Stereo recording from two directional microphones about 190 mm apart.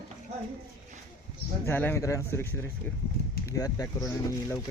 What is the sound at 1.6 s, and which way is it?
Speech, 10° left (ahead or behind).